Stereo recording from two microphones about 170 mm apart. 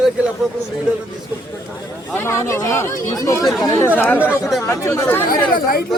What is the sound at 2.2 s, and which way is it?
Speech, 15° left (ahead or behind).